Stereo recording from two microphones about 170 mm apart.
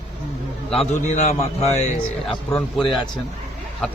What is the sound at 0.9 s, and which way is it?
Speech, 45° left (ahead or behind).